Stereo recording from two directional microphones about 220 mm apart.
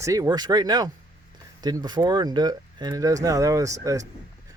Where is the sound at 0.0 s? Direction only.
15° right (ahead or behind).